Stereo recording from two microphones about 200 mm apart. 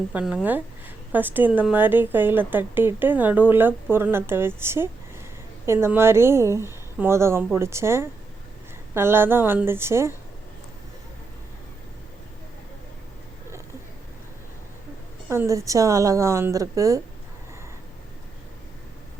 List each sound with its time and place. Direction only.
0.1 s a woman's voice: 5° right (ahead or behind)
15.3 s a woman's voice: 15° right (ahead or behind)